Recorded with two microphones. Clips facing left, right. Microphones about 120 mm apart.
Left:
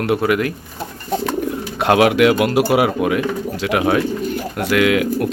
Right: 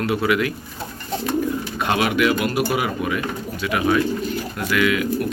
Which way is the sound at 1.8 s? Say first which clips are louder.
Left 7 dB; 80° left.